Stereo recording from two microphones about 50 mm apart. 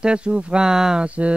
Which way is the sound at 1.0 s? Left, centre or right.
Right.